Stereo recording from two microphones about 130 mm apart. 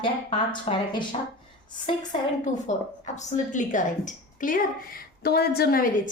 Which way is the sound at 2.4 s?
65° left (ahead or behind).